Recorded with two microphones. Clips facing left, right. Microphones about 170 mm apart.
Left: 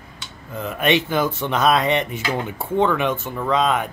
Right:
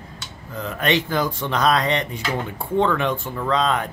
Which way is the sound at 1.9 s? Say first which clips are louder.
Left 2 dB; 10° left (ahead or behind).